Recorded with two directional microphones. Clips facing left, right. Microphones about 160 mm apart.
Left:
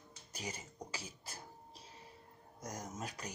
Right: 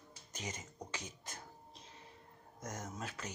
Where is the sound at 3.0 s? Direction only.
40° left (ahead or behind).